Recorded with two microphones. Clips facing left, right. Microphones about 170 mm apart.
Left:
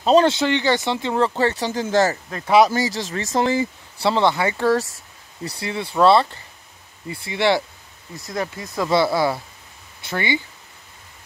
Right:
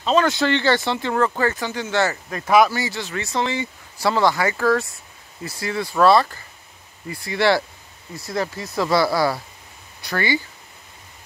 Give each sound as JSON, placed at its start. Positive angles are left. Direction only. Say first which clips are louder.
{"t": 0.0, "sound": "speech", "louder": "left 4 dB", "side_deg": 35}
{"t": 0.3, "sound": "speech", "louder": "even", "side_deg": 20}
{"t": 2.4, "sound": "speech", "louder": "left 1 dB", "side_deg": 30}
{"t": 4.0, "sound": "speech", "louder": "even", "side_deg": 25}